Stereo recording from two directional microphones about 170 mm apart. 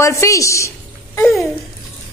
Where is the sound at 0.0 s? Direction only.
20° left (ahead or behind).